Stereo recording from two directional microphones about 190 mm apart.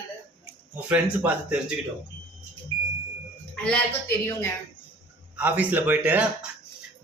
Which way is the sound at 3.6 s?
10° left (ahead or behind).